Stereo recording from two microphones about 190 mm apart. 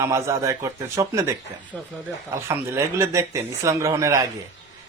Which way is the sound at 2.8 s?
15° right (ahead or behind).